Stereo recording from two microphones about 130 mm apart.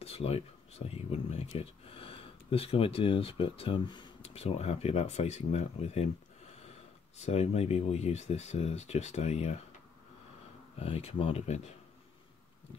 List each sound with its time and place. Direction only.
0.0 s speech: 50° left (ahead or behind)
4.2 s speech: 50° left (ahead or behind)
7.2 s speech: 55° left (ahead or behind)
10.8 s speech: 50° left (ahead or behind)